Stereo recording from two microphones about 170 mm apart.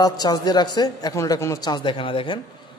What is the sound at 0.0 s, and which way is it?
A man's voice, 25° left (ahead or behind).